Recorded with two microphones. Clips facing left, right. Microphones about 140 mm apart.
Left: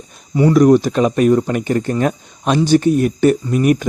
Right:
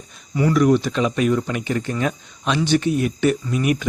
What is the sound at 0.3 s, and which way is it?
Speech, 30° left (ahead or behind).